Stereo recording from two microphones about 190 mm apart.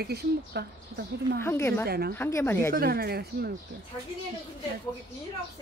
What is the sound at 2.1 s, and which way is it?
Speech, 10° left (ahead or behind).